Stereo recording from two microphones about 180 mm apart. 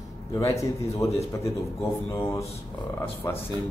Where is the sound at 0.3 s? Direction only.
15° left (ahead or behind).